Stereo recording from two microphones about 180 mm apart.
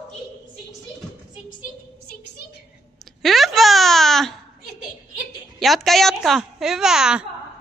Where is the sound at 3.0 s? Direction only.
Centre (ahead or behind).